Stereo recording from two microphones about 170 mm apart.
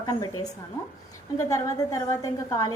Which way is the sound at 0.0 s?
20° left (ahead or behind).